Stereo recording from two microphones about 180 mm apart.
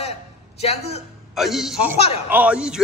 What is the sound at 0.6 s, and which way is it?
Speech, 35° left (ahead or behind).